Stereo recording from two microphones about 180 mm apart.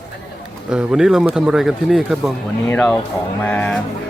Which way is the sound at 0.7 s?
5° right (ahead or behind).